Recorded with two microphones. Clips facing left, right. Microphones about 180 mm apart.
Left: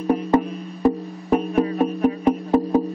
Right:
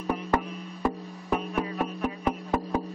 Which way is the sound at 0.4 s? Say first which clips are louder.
Left 9 dB; 35° left (ahead or behind).